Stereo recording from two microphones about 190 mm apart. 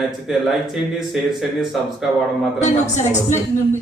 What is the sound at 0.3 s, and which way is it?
Speech, centre (ahead or behind).